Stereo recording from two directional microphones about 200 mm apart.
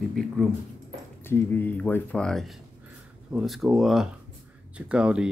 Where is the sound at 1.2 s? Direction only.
10° left (ahead or behind).